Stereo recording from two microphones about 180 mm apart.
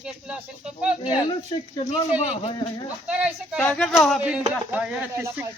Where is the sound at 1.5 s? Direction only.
25° left (ahead or behind).